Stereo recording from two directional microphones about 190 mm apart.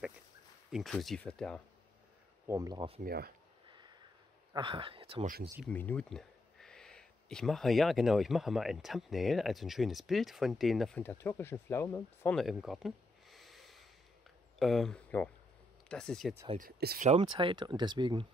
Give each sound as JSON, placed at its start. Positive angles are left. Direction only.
{"t": 0.7, "sound": "speech", "side_deg": 0}
{"t": 2.4, "sound": "speech", "side_deg": -15}
{"t": 3.0, "sound": "speech", "side_deg": -50}
{"t": 4.6, "sound": "speech", "side_deg": -30}
{"t": 5.2, "sound": "speech", "side_deg": -50}
{"t": 5.7, "sound": "speech", "side_deg": 10}
{"t": 12.4, "sound": "a sound", "side_deg": 0}
{"t": 14.6, "sound": "speech", "side_deg": 0}
{"t": 16.5, "sound": "speech", "side_deg": -50}
{"t": 17.1, "sound": "speech", "side_deg": -25}